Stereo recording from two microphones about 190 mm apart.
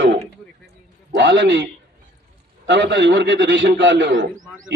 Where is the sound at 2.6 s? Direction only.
70° right (ahead or behind).